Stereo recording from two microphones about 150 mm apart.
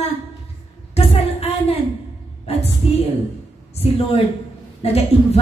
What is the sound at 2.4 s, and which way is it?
Music, 45° left (ahead or behind).